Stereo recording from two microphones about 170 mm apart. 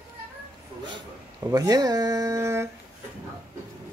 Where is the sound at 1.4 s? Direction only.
20° right (ahead or behind).